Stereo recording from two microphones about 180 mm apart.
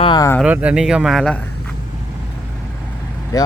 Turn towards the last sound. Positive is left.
turn(degrees=20)  # may be behind; listen again after turning